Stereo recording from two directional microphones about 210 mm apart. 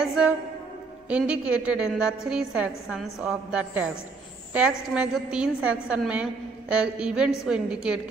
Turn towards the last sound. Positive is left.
turn(degrees=-5)  # may be behind; listen again after turning